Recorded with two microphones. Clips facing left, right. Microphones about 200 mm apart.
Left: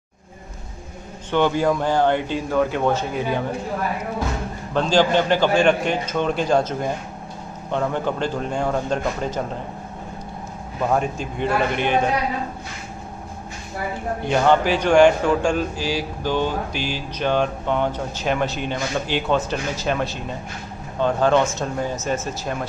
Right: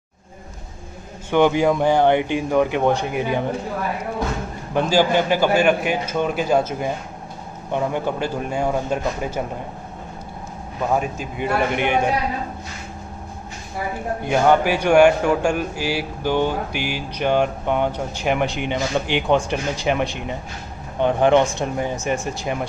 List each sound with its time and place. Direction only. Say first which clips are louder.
1.3 s a man's voice: right 3 dB; 15° right (ahead or behind)
4.7 s a man's voice: even; 10° right (ahead or behind)
10.9 s a man's voice: even; 5° right (ahead or behind)
14.2 s a man's voice: right 1 dB; 10° right (ahead or behind)